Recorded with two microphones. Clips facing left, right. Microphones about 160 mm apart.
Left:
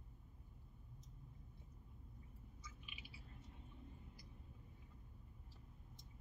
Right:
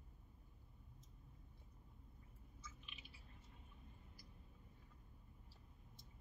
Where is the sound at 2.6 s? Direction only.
10° left (ahead or behind).